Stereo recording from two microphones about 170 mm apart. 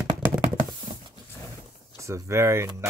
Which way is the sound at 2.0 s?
15° right (ahead or behind).